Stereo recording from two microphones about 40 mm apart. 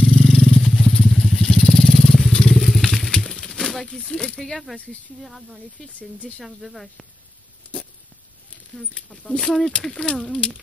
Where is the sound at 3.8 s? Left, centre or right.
Left.